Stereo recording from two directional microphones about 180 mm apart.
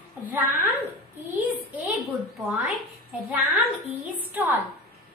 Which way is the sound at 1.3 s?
10° right (ahead or behind).